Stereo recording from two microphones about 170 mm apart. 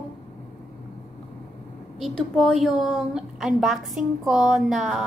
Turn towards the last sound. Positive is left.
turn(degrees=0)  # may be behind; listen again after turning